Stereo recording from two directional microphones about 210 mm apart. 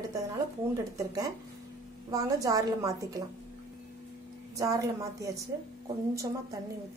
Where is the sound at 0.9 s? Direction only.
15° right (ahead or behind).